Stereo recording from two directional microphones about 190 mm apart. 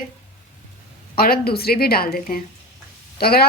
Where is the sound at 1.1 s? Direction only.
55° left (ahead or behind).